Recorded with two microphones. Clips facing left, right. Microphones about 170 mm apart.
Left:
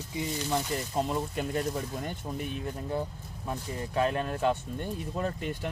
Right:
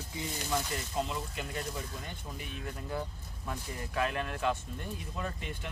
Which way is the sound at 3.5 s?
30° left (ahead or behind).